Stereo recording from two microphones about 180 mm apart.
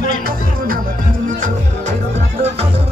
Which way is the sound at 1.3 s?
45° right (ahead or behind).